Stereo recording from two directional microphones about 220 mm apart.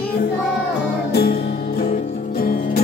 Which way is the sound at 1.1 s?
45° left (ahead or behind).